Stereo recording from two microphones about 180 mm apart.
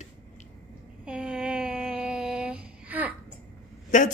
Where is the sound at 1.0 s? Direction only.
5° right (ahead or behind).